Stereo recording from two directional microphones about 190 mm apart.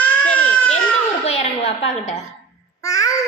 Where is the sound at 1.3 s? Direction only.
35° left (ahead or behind).